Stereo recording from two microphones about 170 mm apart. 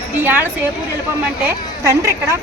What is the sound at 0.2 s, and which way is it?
Speech, 10° right (ahead or behind).